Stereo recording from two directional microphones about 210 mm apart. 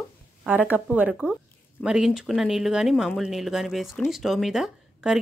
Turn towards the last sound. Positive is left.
turn(degrees=0)  # may be behind; listen again after turning